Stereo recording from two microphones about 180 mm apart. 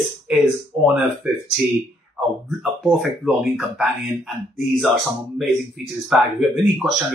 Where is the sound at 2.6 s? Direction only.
5° right (ahead or behind).